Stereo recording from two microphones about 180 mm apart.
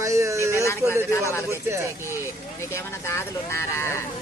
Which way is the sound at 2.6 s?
15° left (ahead or behind).